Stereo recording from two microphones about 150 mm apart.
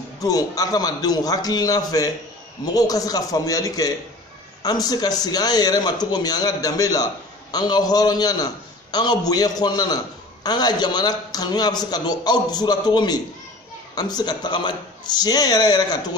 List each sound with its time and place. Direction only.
0.2 s a man's voice: 25° left (ahead or behind)